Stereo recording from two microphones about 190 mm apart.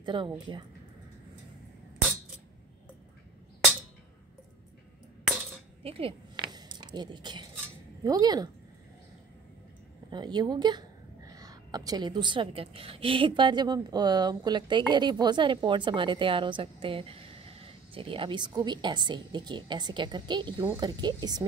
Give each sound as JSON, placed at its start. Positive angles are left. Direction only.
{"t": 0.0, "sound": "a woman's voice", "side_deg": -25}
{"t": 5.9, "sound": "a sound", "side_deg": -30}
{"t": 8.0, "sound": "a woman's voice", "side_deg": -20}
{"t": 10.1, "sound": "a woman's voice", "side_deg": -25}